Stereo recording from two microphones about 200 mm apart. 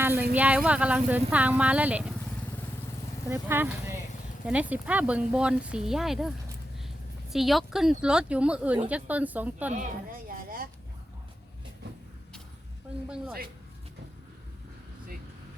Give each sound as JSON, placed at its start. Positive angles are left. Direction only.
{"t": 0.3, "sound": "speech", "side_deg": -5}
{"t": 3.2, "sound": "speech", "side_deg": -10}
{"t": 7.3, "sound": "speech", "side_deg": 0}
{"t": 9.7, "sound": "speech", "side_deg": -45}